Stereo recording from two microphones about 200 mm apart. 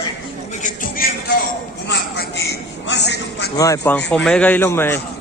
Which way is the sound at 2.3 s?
55° left (ahead or behind).